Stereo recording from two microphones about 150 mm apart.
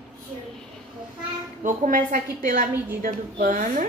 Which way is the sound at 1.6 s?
60° right (ahead or behind).